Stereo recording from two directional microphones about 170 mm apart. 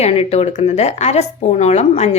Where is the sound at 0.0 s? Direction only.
40° left (ahead or behind).